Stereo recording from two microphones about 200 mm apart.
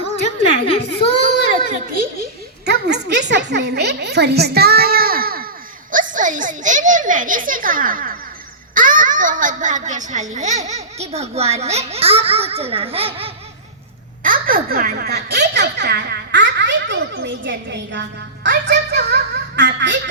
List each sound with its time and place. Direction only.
0.7 s a child's voice: 30° left (ahead or behind)
1.2 s baby cry: 40° right (ahead or behind)
2.6 s music: 55° right (ahead or behind)
5.9 s a woman's voice: 40° right (ahead or behind)
14.2 s speech: 45° right (ahead or behind); by 20.0 s 60° right (ahead or behind)